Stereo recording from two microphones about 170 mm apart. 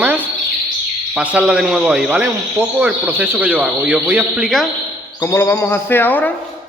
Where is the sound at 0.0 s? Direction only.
10° right (ahead or behind).